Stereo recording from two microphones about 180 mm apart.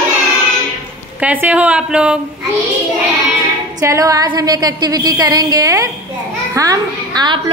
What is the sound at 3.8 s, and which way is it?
A woman's voice, 15° right (ahead or behind).